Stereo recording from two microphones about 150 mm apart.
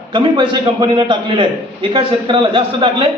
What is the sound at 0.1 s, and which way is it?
A man's voice, 35° right (ahead or behind).